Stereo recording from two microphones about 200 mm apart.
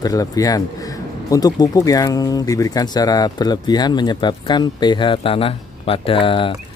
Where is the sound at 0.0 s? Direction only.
20° left (ahead or behind).